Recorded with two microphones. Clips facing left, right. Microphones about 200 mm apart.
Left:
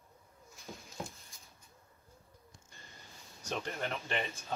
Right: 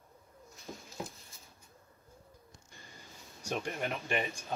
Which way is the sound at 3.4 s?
10° right (ahead or behind).